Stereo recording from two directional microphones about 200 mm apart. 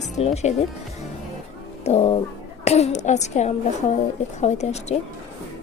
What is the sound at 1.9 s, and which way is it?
Speech, 30° left (ahead or behind).